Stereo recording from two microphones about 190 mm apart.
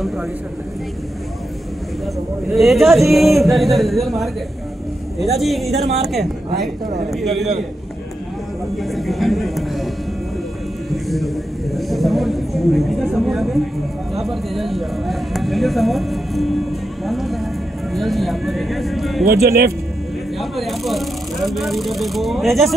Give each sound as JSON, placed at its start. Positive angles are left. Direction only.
{"t": 2.5, "sound": "a man's voice", "side_deg": 0}
{"t": 8.7, "sound": "a man's voice", "side_deg": 0}
{"t": 10.9, "sound": "a man's voice", "side_deg": 0}
{"t": 19.2, "sound": "speech", "side_deg": -55}
{"t": 20.3, "sound": "a man's voice", "side_deg": 0}